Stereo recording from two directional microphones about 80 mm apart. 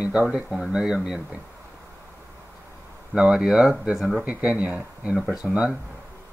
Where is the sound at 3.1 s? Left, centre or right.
Centre.